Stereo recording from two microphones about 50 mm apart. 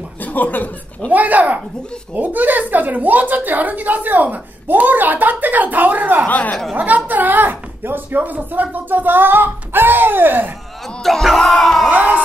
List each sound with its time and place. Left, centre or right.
0.2 s speech: left
1.1 s a woman's voice: right
6.2 s speech: left
7.1 s a woman's voice: right
11.0 s music: centre
11.9 s a woman's voice: right